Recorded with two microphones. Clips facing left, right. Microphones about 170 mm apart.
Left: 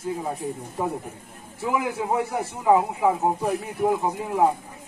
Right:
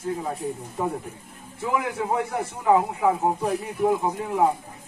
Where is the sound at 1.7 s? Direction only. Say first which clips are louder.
Left 1 dB; 5° left (ahead or behind).